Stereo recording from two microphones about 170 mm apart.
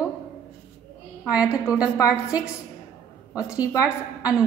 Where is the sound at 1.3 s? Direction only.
5° right (ahead or behind).